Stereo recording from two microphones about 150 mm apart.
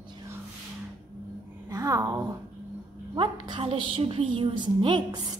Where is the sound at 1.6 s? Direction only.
20° right (ahead or behind).